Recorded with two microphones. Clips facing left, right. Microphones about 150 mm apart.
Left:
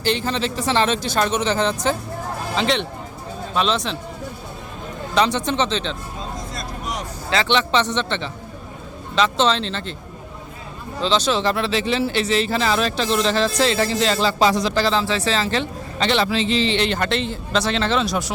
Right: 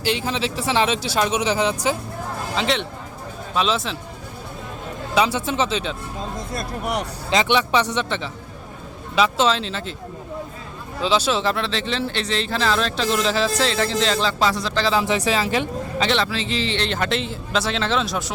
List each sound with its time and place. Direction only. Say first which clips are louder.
0.0 s speech: left 1 dB; 5° right (ahead or behind)
5.1 s speech: left 1 dB; 5° right (ahead or behind)
6.5 s speech: right 4 dB; 60° right (ahead or behind)
7.3 s speech: even; 15° right (ahead or behind)
11.0 s speech: left 1 dB; 5° right (ahead or behind)
14.3 s speech: left 4 dB; 15° left (ahead or behind)
14.9 s speech: right 1 dB; 15° right (ahead or behind)
16.0 s speech: left 3 dB; 5° left (ahead or behind)
16.3 s speech: left 5 dB; 20° left (ahead or behind)
16.8 s speech: left 2 dB; centre (ahead or behind)